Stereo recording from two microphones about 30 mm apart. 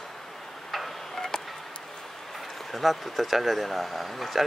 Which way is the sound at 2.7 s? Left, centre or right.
Centre.